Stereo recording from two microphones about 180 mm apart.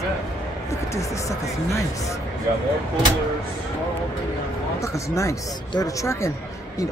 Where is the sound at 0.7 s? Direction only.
15° left (ahead or behind).